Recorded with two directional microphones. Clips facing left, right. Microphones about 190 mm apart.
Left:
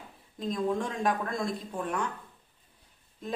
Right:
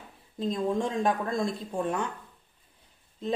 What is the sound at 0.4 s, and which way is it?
Speech, 25° right (ahead or behind).